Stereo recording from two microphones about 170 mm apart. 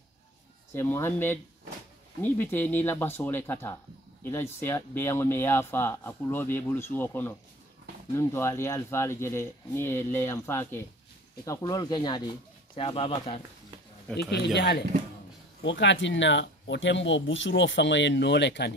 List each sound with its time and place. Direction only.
0.7 s speech: 15° left (ahead or behind); by 13.4 s 35° left (ahead or behind)
14.1 s speech: 5° left (ahead or behind)
15.6 s speech: 90° left